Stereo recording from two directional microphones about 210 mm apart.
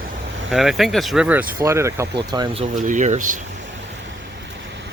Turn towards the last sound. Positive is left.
turn(degrees=-35)  # may be behind; listen again after turning